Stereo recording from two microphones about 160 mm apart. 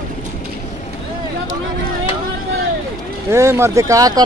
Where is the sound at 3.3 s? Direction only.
15° right (ahead or behind).